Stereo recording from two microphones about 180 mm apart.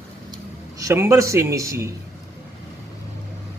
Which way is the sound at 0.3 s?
20° right (ahead or behind).